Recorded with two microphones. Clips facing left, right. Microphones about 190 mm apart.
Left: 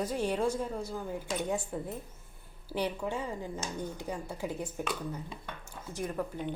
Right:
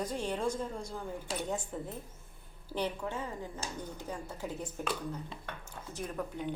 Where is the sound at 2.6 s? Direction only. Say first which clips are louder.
Left 2 dB; 10° left (ahead or behind).